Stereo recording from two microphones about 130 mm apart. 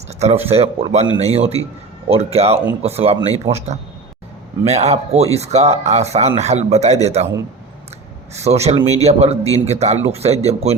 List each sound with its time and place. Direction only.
0.1 s speech: 60° right (ahead or behind)
4.6 s speech: 55° right (ahead or behind)
8.3 s speech: 55° right (ahead or behind)
8.8 s speech: 30° left (ahead or behind)
9.0 s speech: 55° right (ahead or behind)